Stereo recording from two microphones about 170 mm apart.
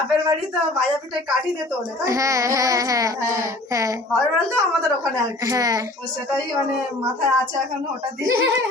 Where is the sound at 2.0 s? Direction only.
20° right (ahead or behind).